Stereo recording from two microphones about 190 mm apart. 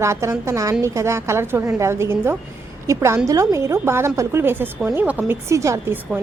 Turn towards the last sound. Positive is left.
turn(degrees=-10)  # may be behind; listen again after turning